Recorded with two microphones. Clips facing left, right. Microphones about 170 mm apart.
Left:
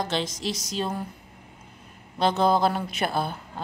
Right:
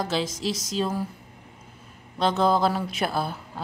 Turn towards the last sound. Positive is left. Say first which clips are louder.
# even
turn(degrees=0)  # may be behind; listen again after turning